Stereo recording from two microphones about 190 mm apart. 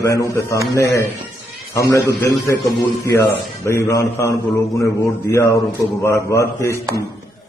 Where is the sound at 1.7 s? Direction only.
15° left (ahead or behind).